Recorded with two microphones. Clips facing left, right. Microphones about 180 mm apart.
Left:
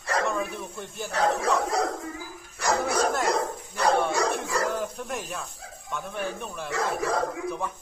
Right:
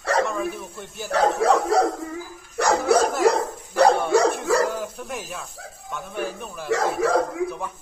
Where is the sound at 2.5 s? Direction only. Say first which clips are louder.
Right 6 dB; 70° right (ahead or behind).